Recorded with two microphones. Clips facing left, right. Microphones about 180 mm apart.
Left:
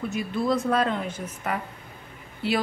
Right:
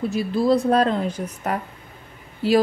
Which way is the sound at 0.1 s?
35° right (ahead or behind).